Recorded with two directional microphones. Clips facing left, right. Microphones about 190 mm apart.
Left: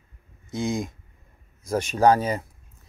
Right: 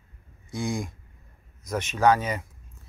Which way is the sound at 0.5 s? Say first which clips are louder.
Left 3 dB; 20° left (ahead or behind).